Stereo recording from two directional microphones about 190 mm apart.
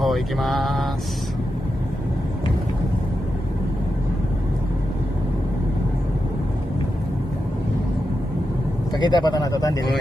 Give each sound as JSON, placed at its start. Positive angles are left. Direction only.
{"t": 0.0, "sound": "mantra", "side_deg": 0}
{"t": 8.9, "sound": "speech", "side_deg": 20}